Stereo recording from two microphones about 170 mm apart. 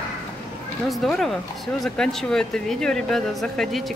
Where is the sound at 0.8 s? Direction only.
Centre (ahead or behind).